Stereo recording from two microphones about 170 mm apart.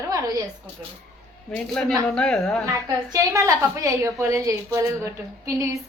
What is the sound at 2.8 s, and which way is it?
A woman's voice, 20° right (ahead or behind).